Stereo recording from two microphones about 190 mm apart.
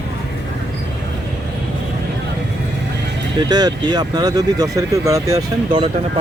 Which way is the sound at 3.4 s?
20° right (ahead or behind).